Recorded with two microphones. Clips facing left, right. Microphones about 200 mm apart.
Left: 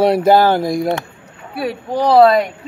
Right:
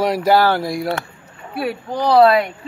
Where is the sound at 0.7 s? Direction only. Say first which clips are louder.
Left 4 dB; 45° left (ahead or behind).